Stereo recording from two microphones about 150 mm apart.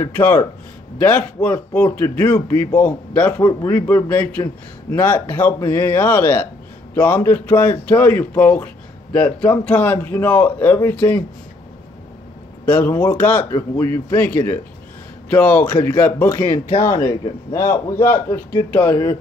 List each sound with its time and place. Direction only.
0.0 s a man's voice: 15° left (ahead or behind)
12.6 s a man's voice: 15° left (ahead or behind)